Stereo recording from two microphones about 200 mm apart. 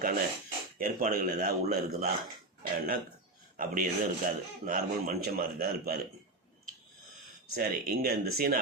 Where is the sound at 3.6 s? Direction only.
45° right (ahead or behind).